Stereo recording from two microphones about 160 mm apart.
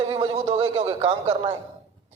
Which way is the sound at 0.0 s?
30° right (ahead or behind).